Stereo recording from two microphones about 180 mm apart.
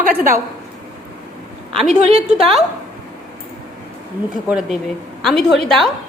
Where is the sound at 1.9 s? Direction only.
35° right (ahead or behind).